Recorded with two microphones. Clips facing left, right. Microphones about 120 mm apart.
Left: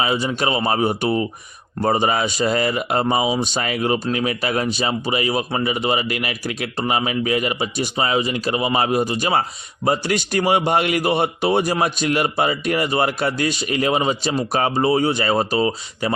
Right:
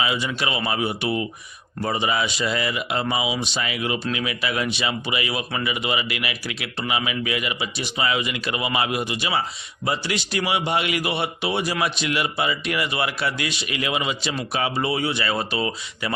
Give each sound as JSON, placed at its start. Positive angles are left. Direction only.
{"t": 0.0, "sound": "speech", "side_deg": 35}